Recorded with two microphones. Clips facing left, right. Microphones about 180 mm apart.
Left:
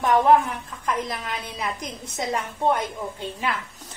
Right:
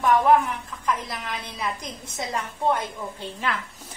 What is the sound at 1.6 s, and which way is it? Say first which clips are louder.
A woman's voice: left 1 dB; 20° left (ahead or behind).